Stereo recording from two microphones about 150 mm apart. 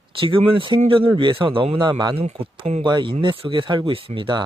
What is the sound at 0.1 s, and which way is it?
Speech, 35° right (ahead or behind).